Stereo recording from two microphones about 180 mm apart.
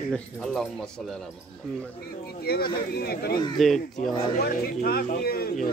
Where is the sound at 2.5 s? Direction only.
60° left (ahead or behind).